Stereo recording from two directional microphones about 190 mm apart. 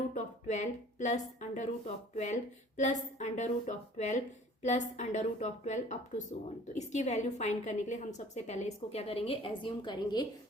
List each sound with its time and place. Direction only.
0.1 s a woman's voice: 40° left (ahead or behind); by 10.2 s 25° left (ahead or behind)